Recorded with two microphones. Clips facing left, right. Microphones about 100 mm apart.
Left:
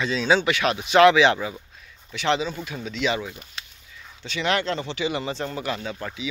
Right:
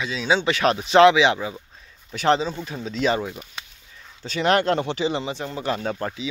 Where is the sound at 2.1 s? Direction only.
40° right (ahead or behind).